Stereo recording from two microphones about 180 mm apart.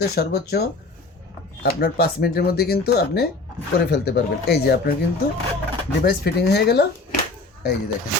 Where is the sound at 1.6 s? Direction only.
60° left (ahead or behind).